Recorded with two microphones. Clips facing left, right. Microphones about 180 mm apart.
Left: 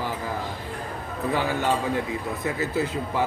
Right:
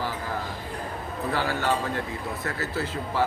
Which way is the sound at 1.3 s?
15° left (ahead or behind).